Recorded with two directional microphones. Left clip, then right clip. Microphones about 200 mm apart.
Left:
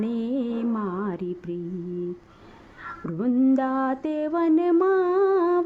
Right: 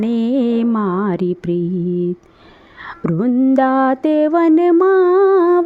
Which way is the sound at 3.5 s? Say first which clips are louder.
Right 11 dB; 35° right (ahead or behind).